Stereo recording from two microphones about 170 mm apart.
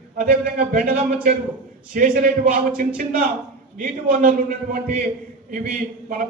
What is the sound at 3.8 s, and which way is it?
A man's voice, 50° right (ahead or behind).